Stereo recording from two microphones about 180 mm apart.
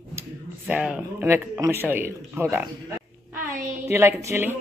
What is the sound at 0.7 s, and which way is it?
Speech, 5° right (ahead or behind).